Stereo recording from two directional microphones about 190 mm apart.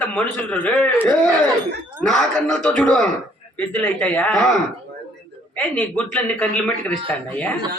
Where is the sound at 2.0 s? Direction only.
5° left (ahead or behind).